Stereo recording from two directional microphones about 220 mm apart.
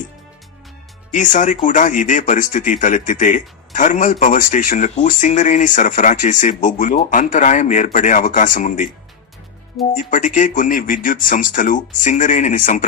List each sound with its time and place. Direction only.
1.1 s speech: 35° left (ahead or behind)